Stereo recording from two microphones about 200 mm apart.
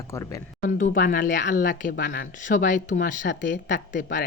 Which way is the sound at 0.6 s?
45° left (ahead or behind).